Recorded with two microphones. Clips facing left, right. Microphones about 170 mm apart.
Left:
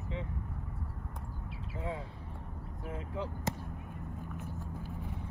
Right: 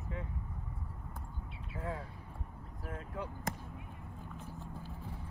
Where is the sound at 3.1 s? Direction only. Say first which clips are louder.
Left 3 dB; 25° left (ahead or behind).